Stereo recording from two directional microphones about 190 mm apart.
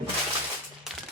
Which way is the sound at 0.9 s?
Centre (ahead or behind).